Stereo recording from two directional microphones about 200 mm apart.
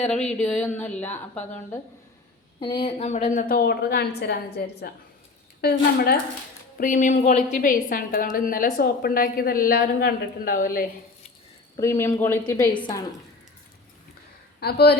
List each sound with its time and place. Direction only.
0.0 s a woman's voice: 5° left (ahead or behind)
2.6 s a woman's voice: 25° left (ahead or behind); by 10.8 s 45° left (ahead or behind)
11.8 s a woman's voice: 15° left (ahead or behind)
14.6 s a woman's voice: 55° left (ahead or behind)